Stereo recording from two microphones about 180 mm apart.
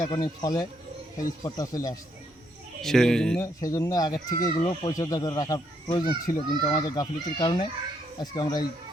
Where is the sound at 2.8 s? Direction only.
Centre (ahead or behind).